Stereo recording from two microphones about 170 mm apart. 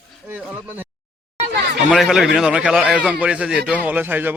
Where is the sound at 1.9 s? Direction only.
Centre (ahead or behind).